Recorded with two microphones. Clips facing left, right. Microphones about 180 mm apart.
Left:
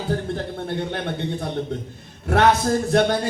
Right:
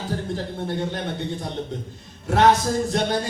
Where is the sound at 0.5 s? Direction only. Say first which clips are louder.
Even; 60° left (ahead or behind).